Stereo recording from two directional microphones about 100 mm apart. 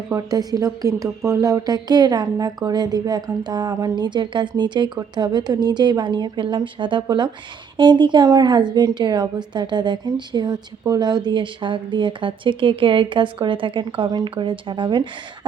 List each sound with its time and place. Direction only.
0.1 s speech: 35° right (ahead or behind)
3.9 s a woman's voice: 50° right (ahead or behind)